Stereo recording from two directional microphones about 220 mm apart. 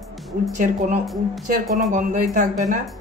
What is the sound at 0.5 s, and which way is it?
Speech, 35° right (ahead or behind).